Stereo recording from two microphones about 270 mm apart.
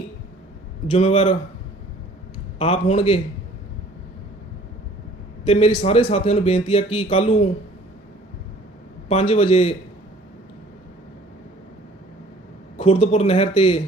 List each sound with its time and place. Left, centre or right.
0.9 s speech: left
2.6 s speech: left
5.5 s speech: left
9.0 s speech: left
12.7 s speech: left